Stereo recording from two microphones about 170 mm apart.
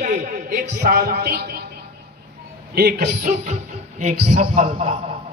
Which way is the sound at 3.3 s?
40° right (ahead or behind).